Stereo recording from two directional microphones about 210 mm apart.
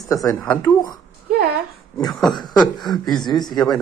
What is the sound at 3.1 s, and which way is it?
Speech, 20° left (ahead or behind).